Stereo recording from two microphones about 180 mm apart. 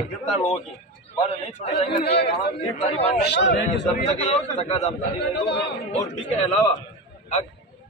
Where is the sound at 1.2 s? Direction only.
35° left (ahead or behind).